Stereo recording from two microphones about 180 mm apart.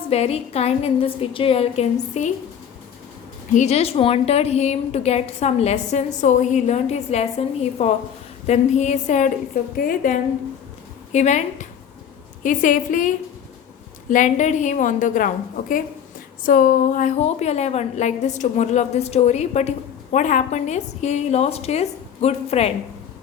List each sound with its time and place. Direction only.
0.1 s a woman's voice: 35° left (ahead or behind)
3.5 s a woman's voice: 40° left (ahead or behind)
9.7 s a woman's voice: 50° left (ahead or behind)
16.4 s a woman's voice: 50° left (ahead or behind)